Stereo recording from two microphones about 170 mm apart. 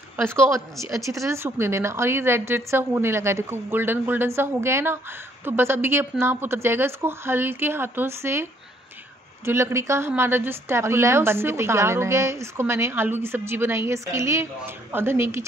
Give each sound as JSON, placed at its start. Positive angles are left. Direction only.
{"t": 0.2, "sound": "a woman's voice", "side_deg": -15}